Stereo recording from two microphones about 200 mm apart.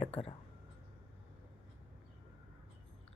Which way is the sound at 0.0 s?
30° left (ahead or behind).